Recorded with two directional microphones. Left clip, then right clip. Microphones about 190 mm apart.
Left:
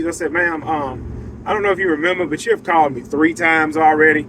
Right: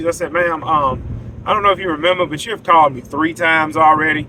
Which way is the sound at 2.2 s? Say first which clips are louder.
Left 2 dB; 20° right (ahead or behind).